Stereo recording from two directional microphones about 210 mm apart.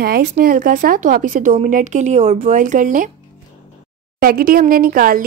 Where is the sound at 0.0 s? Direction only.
45° right (ahead or behind).